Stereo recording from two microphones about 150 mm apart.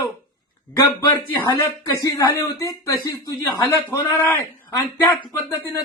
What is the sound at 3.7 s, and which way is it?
Speech, 15° left (ahead or behind).